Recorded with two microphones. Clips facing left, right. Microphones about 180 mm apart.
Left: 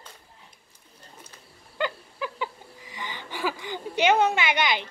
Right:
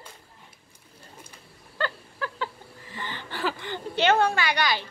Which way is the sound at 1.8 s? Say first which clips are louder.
Left 1 dB; 15° left (ahead or behind).